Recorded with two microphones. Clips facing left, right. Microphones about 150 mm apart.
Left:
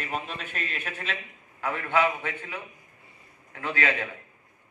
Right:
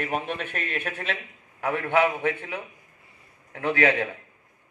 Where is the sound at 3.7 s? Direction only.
60° right (ahead or behind).